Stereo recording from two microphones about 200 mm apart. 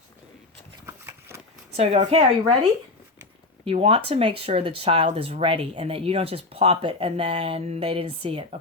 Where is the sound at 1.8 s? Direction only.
30° right (ahead or behind).